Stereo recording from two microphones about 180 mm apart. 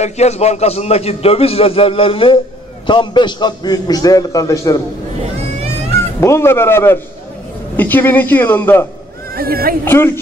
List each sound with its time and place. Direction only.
0.0 s a man's voice: 35° left (ahead or behind); by 4.8 s 20° left (ahead or behind)
6.2 s a man's voice: 15° left (ahead or behind)
9.3 s speech: 55° right (ahead or behind)
9.8 s a man's voice: 15° left (ahead or behind)